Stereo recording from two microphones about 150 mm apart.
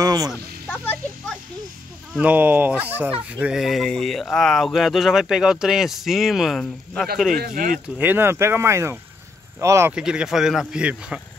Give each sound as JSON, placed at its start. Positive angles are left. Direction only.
{"t": 0.0, "sound": "a sound", "side_deg": -25}
{"t": 0.7, "sound": "a child's voice", "side_deg": 10}
{"t": 2.1, "sound": "speech", "side_deg": -10}
{"t": 7.3, "sound": "speech", "side_deg": -75}
{"t": 7.7, "sound": "speech", "side_deg": -10}
{"t": 9.9, "sound": "speech", "side_deg": -5}